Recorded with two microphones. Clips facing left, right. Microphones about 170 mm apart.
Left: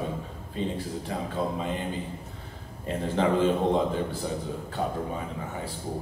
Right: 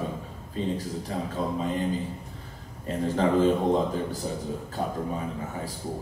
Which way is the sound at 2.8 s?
40° right (ahead or behind).